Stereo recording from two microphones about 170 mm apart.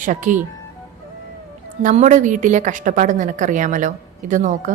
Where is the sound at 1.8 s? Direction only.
45° right (ahead or behind).